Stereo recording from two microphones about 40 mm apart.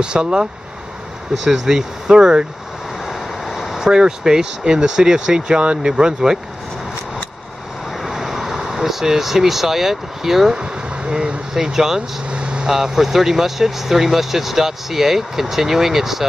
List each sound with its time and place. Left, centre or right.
0.0 s speech: centre
3.1 s vehicle: centre
3.8 s speech: centre
8.1 s speech: centre
10.5 s speech: right
11.5 s speech: centre
12.3 s vehicle: right
12.6 s speech: centre